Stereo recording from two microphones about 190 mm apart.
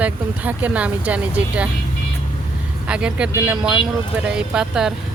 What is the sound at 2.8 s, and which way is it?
Speech, 5° right (ahead or behind).